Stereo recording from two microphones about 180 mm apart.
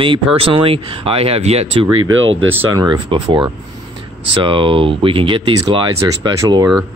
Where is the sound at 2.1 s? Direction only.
90° right.